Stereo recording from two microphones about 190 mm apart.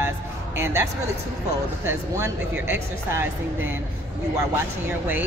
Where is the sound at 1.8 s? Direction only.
15° right (ahead or behind).